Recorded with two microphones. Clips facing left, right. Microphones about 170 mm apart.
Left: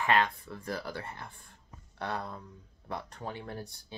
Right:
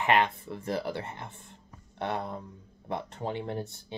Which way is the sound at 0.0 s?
20° right (ahead or behind).